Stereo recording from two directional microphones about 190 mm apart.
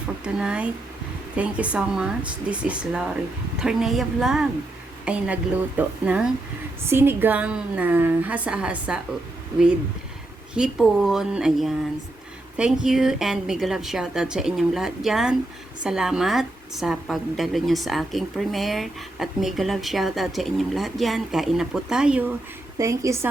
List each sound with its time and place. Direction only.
0.3 s a woman's voice: 5° right (ahead or behind)
10.5 s a woman's voice: 5° right (ahead or behind)
12.8 s a woman's voice: 5° right (ahead or behind)
22.8 s a woman's voice: 15° right (ahead or behind)